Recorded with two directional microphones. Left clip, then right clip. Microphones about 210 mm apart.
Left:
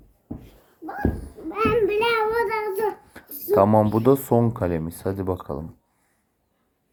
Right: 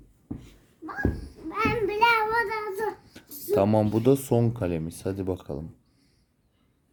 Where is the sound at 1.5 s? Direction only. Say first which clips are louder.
Left 5 dB; 20° right (ahead or behind).